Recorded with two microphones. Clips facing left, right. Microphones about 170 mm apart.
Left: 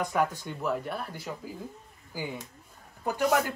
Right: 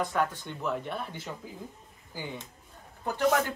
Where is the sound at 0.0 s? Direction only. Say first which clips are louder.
Left 1 dB; 5° left (ahead or behind).